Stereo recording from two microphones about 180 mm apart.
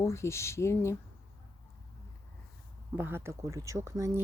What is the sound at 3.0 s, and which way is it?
Speech, 10° right (ahead or behind).